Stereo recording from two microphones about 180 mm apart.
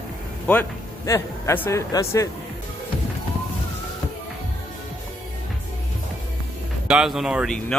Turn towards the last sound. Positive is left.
turn(degrees=0)  # may be behind; listen again after turning